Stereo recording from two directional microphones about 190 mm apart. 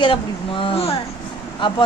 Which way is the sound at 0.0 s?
25° left (ahead or behind).